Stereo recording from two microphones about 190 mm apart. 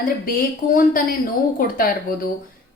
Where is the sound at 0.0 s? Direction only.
50° left (ahead or behind).